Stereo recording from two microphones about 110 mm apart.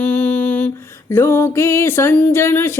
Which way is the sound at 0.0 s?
15° left (ahead or behind).